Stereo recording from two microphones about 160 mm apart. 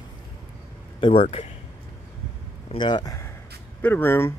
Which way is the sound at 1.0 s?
30° left (ahead or behind).